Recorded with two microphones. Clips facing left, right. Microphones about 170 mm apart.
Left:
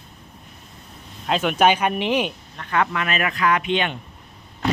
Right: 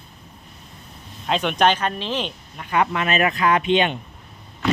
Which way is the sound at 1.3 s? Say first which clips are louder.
Left 1 dB; 5° left (ahead or behind).